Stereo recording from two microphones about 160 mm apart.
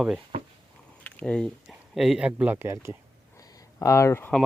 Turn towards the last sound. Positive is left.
turn(degrees=15)  # may be behind; listen again after turning